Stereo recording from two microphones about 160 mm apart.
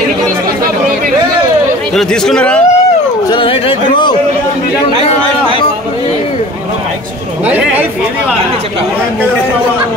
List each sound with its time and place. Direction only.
2.0 s speech: 5° left (ahead or behind)
3.3 s speech: 35° left (ahead or behind)